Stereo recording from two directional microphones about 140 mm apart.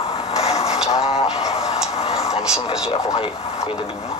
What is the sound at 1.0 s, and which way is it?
Music, 45° left (ahead or behind).